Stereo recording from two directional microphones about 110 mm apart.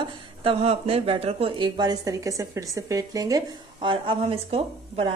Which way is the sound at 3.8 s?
55° right (ahead or behind).